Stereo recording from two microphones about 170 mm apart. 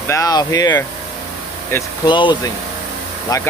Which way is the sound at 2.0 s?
25° left (ahead or behind).